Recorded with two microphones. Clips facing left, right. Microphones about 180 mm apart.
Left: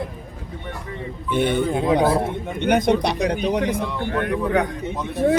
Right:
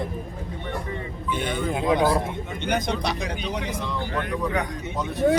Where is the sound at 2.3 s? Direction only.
55° left (ahead or behind).